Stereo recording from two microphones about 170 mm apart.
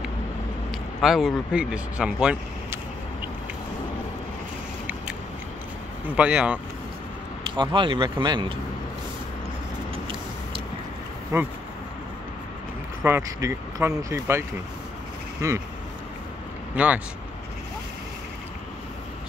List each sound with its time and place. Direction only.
0.7 s speech: centre (ahead or behind)
6.0 s speech: 5° right (ahead or behind)
7.4 s speech: 30° right (ahead or behind)
11.3 s speech: 20° right (ahead or behind)
13.0 s speech: 15° right (ahead or behind)
15.4 s speech: 15° right (ahead or behind)
16.7 s speech: 10° right (ahead or behind)